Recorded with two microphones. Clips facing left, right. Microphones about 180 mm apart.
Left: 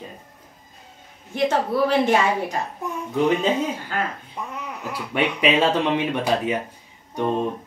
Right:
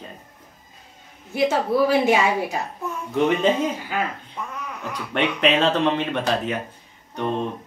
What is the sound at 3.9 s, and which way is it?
Speech, 10° right (ahead or behind).